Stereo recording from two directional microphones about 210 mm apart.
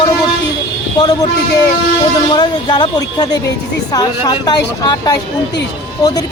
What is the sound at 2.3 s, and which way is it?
Speech, 20° left (ahead or behind).